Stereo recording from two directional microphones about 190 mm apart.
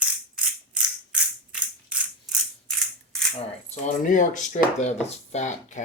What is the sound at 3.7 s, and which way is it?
Speech, 40° left (ahead or behind).